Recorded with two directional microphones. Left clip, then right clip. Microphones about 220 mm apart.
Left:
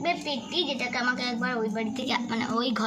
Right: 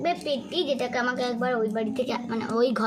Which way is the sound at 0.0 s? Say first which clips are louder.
Right 2 dB; 25° right (ahead or behind).